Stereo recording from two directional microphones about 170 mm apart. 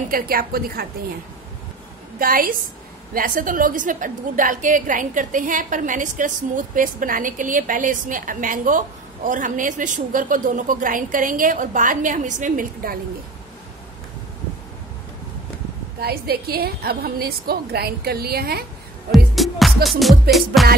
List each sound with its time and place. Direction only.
0.1 s a woman's voice: 60° right (ahead or behind)
2.1 s a woman's voice: 55° right (ahead or behind)
16.0 s a woman's voice: 65° right (ahead or behind)
19.1 s music: centre (ahead or behind)